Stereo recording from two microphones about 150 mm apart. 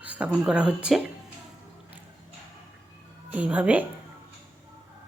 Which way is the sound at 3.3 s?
10° right (ahead or behind).